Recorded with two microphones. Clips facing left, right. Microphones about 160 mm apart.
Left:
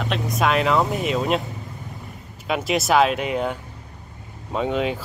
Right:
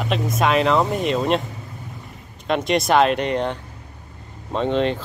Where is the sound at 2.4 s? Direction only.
5° left (ahead or behind).